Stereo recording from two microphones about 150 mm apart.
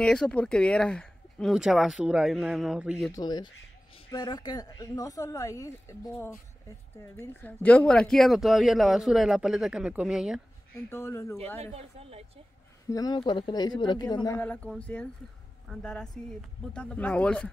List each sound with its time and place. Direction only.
0.0 s speech: 5° left (ahead or behind)
3.1 s speech: 25° left (ahead or behind); by 10.4 s 5° right (ahead or behind)
10.9 s speech: 15° left (ahead or behind)
11.6 s speech: 40° right (ahead or behind)
12.9 s speech: 25° left (ahead or behind)
14.4 s speech: 10° left (ahead or behind)